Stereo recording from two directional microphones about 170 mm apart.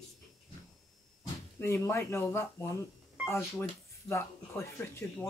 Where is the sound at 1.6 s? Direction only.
15° left (ahead or behind).